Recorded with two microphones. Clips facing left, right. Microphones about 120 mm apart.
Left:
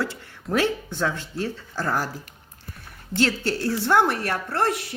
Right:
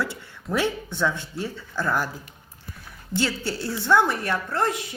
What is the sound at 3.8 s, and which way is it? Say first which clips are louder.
Speech: even; 90° left.